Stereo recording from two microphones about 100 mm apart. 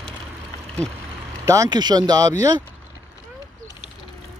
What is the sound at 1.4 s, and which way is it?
Speech, 30° right (ahead or behind).